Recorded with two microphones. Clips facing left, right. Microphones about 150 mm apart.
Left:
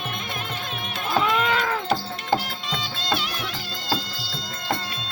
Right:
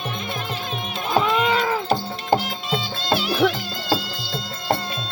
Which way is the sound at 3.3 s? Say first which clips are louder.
Right 12 dB; 60° right (ahead or behind).